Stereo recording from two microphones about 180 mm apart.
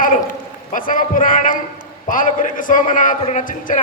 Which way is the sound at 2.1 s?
50° left (ahead or behind).